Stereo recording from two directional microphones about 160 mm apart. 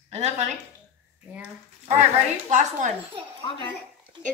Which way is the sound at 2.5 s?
50° right (ahead or behind).